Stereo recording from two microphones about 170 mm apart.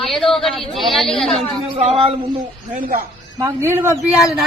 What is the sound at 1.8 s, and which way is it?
Speech, 35° right (ahead or behind).